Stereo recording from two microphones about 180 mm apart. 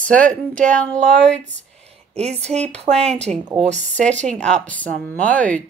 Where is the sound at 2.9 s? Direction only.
5° left (ahead or behind).